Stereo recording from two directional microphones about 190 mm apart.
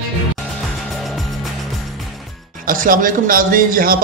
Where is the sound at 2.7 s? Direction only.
45° right (ahead or behind).